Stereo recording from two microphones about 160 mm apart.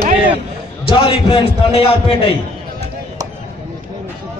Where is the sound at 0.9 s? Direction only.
30° left (ahead or behind).